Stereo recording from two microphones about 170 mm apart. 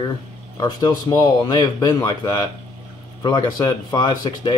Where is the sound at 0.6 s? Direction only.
25° left (ahead or behind).